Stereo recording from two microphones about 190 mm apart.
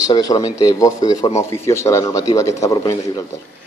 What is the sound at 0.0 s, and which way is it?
Speech, 20° left (ahead or behind).